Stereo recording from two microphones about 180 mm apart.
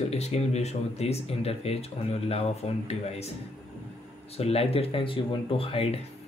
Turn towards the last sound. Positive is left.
turn(degrees=30)  # may be behind; listen again after turning